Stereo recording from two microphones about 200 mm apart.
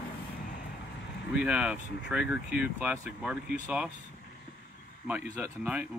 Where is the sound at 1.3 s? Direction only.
5° right (ahead or behind).